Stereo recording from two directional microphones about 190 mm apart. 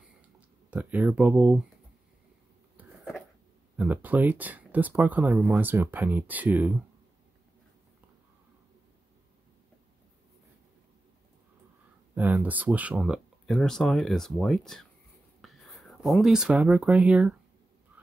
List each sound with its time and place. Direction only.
0.7 s speech: 10° right (ahead or behind)
2.8 s a sound: 10° right (ahead or behind)
3.7 s speech: 10° right (ahead or behind)
12.2 s speech: 10° right (ahead or behind)